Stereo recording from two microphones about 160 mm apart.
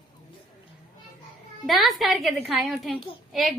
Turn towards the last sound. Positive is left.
turn(degrees=0)  # may be behind; listen again after turning